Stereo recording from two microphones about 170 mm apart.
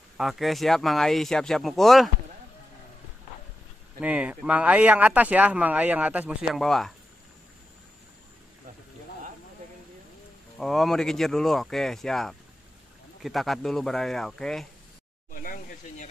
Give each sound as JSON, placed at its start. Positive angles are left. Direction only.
{"t": 0.2, "sound": "speech", "side_deg": 0}
{"t": 4.0, "sound": "speech", "side_deg": -5}
{"t": 10.6, "sound": "speech", "side_deg": 0}
{"t": 15.3, "sound": "a sound", "side_deg": 50}